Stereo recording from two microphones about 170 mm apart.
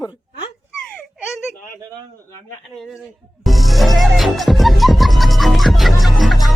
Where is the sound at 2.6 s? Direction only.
Centre (ahead or behind).